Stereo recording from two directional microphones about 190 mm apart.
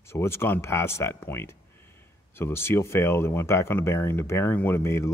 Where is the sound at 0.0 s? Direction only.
15° left (ahead or behind).